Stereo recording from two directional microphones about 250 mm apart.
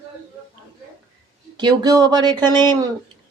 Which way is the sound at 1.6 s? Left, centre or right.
Centre.